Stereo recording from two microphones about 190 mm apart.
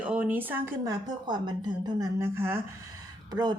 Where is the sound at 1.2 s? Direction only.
25° right (ahead or behind).